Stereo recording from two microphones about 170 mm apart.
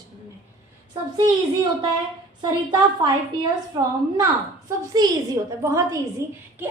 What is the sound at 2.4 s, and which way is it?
A woman's voice, 25° right (ahead or behind).